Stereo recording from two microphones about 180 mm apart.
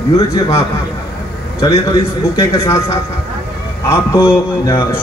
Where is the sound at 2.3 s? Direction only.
15° left (ahead or behind).